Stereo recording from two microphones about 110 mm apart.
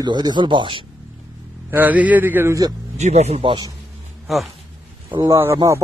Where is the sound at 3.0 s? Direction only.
85° right.